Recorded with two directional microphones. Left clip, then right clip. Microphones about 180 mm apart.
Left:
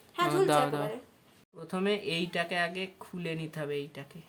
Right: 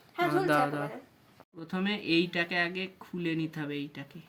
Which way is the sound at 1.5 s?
35° left (ahead or behind).